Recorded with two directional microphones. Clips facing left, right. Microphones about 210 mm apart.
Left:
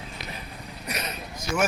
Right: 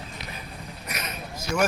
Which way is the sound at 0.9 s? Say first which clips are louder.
Left 3 dB; 35° left (ahead or behind).